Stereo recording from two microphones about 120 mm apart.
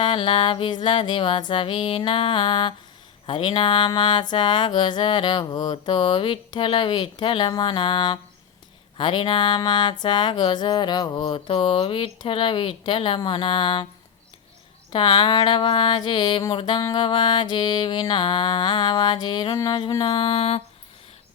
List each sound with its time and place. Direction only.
0.0 s music: 40° left (ahead or behind)
3.2 s speech: 45° left (ahead or behind)
14.9 s speech: 40° left (ahead or behind)